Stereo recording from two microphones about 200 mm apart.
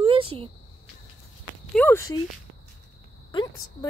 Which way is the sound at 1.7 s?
10° left (ahead or behind).